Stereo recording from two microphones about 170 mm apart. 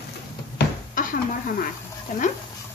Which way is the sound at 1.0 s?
50° left (ahead or behind).